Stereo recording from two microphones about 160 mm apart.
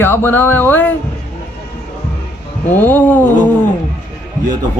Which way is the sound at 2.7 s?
10° left (ahead or behind).